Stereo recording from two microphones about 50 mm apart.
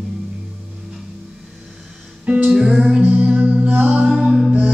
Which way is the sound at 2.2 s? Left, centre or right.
Right.